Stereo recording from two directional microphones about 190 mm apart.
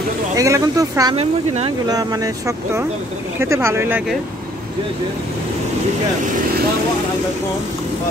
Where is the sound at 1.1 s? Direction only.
30° right (ahead or behind).